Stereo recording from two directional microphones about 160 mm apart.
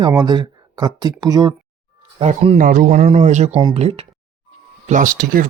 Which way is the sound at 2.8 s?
40° right (ahead or behind).